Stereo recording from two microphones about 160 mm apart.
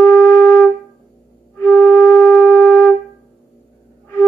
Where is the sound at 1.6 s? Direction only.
15° left (ahead or behind).